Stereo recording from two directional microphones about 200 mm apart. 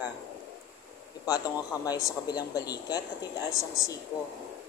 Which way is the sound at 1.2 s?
20° left (ahead or behind).